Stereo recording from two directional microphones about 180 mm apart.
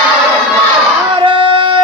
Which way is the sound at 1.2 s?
25° right (ahead or behind).